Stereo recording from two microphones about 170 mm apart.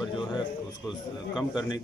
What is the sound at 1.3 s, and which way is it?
Speech, 5° right (ahead or behind).